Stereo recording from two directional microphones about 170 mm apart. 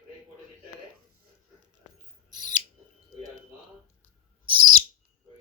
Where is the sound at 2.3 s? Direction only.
25° right (ahead or behind).